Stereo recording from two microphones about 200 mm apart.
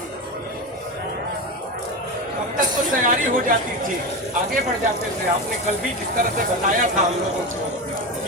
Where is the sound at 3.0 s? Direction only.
40° right (ahead or behind).